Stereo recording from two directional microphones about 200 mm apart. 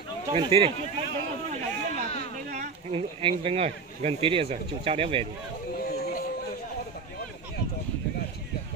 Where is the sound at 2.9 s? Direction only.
25° right (ahead or behind).